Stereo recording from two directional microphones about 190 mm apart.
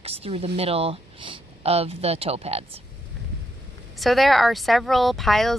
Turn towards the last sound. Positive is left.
turn(degrees=0)  # may be behind; listen again after turning